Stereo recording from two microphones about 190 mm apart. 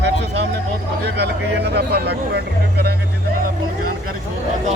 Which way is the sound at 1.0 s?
60° right (ahead or behind).